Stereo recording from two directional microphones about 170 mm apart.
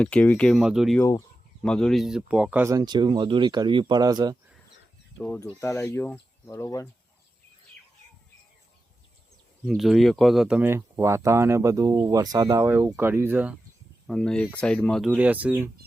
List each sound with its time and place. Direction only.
0.0 s speech: 10° left (ahead or behind); by 4.4 s 25° right (ahead or behind)
5.2 s speech: 10° left (ahead or behind)
9.6 s speech: centre (ahead or behind)
14.1 s speech: 5° left (ahead or behind)